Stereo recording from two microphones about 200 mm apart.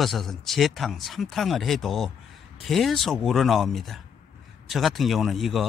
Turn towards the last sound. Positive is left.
turn(degrees=0)  # may be behind; listen again after turning